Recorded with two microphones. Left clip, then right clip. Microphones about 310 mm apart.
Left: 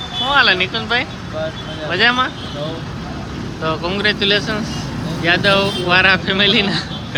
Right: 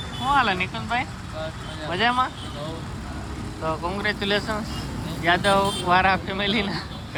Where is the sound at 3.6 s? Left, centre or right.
Centre.